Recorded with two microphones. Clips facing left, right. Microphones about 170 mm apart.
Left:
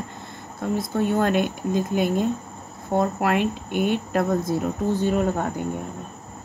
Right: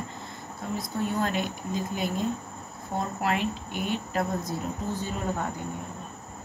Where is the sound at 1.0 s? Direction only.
60° left (ahead or behind).